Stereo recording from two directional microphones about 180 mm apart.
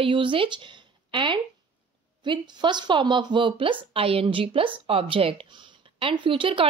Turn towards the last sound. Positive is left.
turn(degrees=-30)  # may be behind; listen again after turning